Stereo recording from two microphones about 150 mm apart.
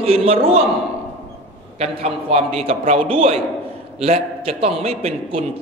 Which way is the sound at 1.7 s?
45° right (ahead or behind).